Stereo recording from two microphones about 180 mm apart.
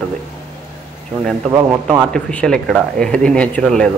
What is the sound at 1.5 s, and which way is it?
Speech, 15° right (ahead or behind).